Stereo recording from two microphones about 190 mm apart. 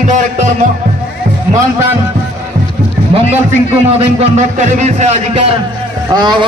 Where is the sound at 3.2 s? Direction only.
30° right (ahead or behind).